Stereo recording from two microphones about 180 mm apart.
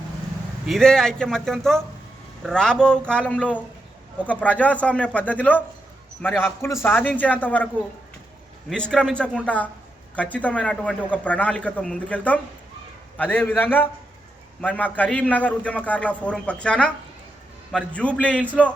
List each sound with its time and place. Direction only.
0.7 s a man's voice: 5° left (ahead or behind)
8.7 s a man's voice: 5° left (ahead or behind)